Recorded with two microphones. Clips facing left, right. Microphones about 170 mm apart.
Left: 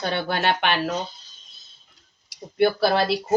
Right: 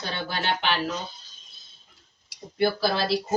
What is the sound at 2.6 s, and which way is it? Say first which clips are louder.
Speech: left 5 dB; 60° left (ahead or behind).